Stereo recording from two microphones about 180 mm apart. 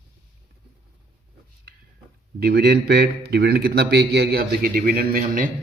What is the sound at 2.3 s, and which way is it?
Speech, 60° right (ahead or behind).